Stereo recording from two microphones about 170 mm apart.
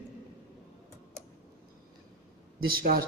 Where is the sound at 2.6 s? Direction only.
60° right (ahead or behind).